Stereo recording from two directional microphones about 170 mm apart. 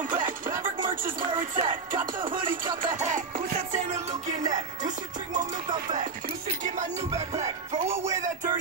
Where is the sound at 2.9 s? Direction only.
50° right (ahead or behind).